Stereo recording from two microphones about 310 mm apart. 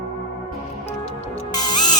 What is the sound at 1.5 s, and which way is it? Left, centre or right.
Music, centre.